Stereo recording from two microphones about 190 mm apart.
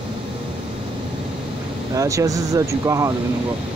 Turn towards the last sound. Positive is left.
turn(degrees=-15)  # may be behind; listen again after turning